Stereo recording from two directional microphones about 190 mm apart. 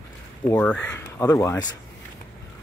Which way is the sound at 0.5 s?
5° left (ahead or behind).